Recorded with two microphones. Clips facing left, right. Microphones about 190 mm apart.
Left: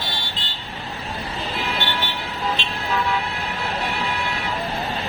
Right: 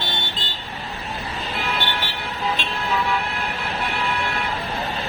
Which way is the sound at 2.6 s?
55° right (ahead or behind).